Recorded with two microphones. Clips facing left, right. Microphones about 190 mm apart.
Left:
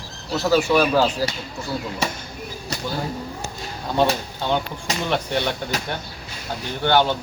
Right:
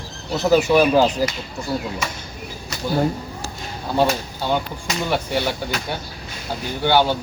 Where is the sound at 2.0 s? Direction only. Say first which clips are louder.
Left 3 dB; 35° left (ahead or behind).